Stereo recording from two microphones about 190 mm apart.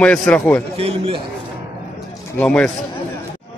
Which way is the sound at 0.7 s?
30° right (ahead or behind).